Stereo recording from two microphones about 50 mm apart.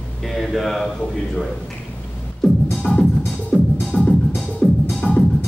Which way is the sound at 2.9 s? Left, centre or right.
Left.